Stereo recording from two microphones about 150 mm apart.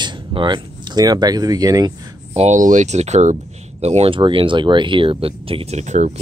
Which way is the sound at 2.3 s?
50° right (ahead or behind).